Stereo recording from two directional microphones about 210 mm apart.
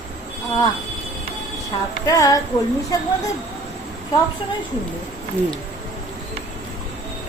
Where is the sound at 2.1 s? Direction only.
15° left (ahead or behind).